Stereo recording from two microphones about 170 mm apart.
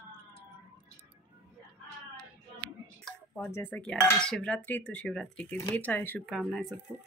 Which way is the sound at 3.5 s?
10° left (ahead or behind).